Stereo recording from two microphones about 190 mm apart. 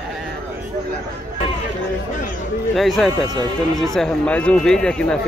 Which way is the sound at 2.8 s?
Centre (ahead or behind).